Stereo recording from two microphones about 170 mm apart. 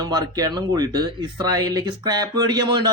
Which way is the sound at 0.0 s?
20° right (ahead or behind).